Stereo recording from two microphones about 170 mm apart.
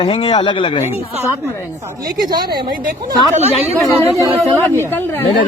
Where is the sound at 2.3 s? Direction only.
25° right (ahead or behind).